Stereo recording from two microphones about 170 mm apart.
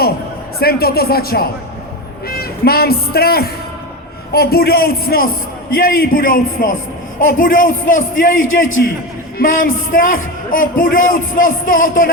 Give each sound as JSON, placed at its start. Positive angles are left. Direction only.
{"t": 0.6, "sound": "a man's voice", "side_deg": 65}
{"t": 9.4, "sound": "a man's voice", "side_deg": 55}